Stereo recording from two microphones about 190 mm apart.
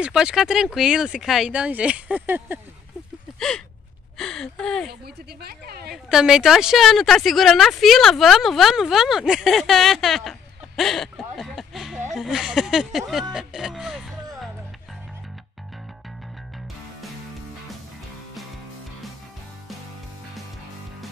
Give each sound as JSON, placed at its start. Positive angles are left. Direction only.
{"t": 0.0, "sound": "speech", "side_deg": -5}
{"t": 3.3, "sound": "a sound", "side_deg": 5}
{"t": 4.2, "sound": "speech", "side_deg": 5}
{"t": 5.0, "sound": "a woman's voice", "side_deg": -55}
{"t": 6.0, "sound": "speech", "side_deg": -5}